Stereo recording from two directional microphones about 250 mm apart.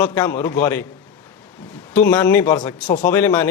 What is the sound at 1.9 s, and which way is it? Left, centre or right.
Speech, centre.